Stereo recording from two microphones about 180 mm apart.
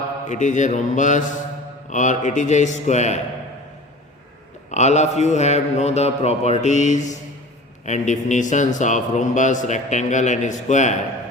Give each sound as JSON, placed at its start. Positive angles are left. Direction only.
{"t": 0.3, "sound": "a man's voice", "side_deg": 45}
{"t": 4.7, "sound": "a man's voice", "side_deg": 40}